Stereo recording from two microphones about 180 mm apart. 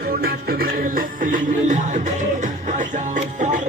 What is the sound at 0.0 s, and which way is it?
Music, 60° right (ahead or behind).